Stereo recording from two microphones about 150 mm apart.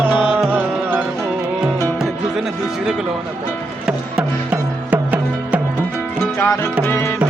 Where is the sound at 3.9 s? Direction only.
5° right (ahead or behind).